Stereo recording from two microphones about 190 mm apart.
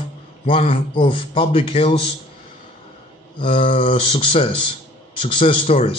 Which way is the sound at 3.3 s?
30° left (ahead or behind).